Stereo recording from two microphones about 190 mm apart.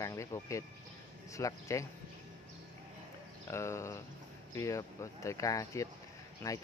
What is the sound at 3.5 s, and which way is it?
Speech, 15° left (ahead or behind).